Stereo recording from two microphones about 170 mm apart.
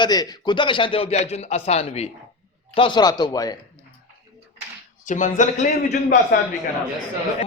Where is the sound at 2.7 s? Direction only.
30° left (ahead or behind).